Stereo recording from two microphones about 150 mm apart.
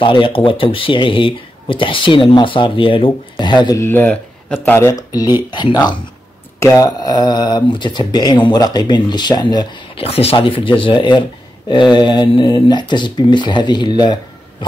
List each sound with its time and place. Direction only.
0.0 s speech: 35° left (ahead or behind)
3.8 s speech: 10° left (ahead or behind); by 14.7 s 30° left (ahead or behind)